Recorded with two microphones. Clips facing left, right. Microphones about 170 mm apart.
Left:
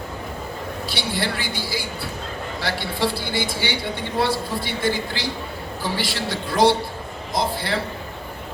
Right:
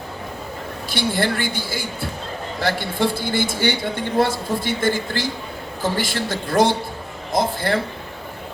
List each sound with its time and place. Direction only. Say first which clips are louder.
0.9 s speech: right 6 dB; 50° right (ahead or behind)